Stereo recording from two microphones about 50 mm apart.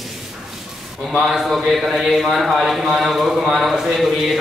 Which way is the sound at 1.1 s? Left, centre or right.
Centre.